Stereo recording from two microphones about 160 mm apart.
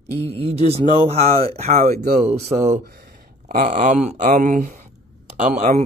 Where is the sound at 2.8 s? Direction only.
70° right (ahead or behind).